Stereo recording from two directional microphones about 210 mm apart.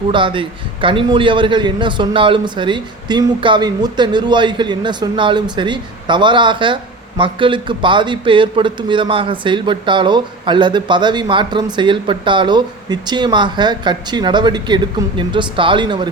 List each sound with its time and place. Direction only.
0.1 s a man's voice: 25° right (ahead or behind)